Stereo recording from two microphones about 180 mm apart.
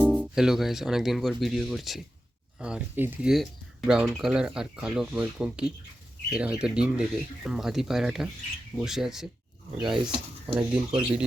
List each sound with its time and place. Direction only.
0.0 s speech: 5° right (ahead or behind)
9.8 s speech: 25° right (ahead or behind)